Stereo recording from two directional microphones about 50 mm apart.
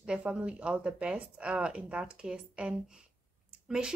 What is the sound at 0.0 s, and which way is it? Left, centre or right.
A woman's voice, centre.